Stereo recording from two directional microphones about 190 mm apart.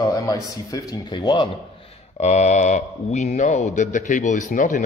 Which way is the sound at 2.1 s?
40° left (ahead or behind).